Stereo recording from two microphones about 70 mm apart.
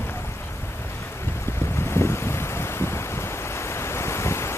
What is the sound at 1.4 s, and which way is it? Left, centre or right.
Boat, left.